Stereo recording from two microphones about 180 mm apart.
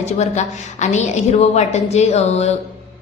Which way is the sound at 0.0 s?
40° left (ahead or behind).